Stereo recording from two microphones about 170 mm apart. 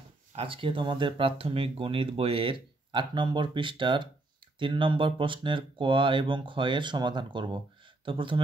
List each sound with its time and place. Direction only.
0.4 s speech: 30° right (ahead or behind)